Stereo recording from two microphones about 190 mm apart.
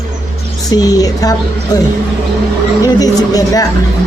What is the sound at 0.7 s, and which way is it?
Speech, 20° left (ahead or behind).